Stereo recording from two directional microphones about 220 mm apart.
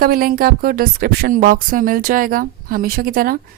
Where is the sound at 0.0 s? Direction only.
40° right (ahead or behind).